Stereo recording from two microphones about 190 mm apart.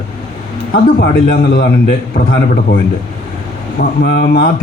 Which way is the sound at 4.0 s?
60° left (ahead or behind).